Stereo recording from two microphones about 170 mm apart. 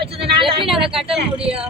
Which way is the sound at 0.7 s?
Centre (ahead or behind).